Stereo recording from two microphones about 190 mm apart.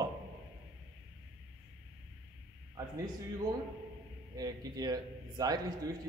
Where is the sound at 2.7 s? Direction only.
20° right (ahead or behind).